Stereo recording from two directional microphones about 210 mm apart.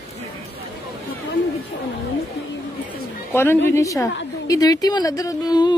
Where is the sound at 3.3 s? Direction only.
10° left (ahead or behind).